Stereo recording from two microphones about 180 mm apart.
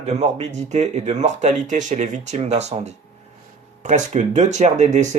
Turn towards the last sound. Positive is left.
turn(degrees=-40)  # may be behind; listen again after turning